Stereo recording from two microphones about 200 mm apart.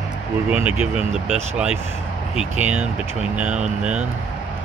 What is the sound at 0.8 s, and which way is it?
Speech, 5° right (ahead or behind).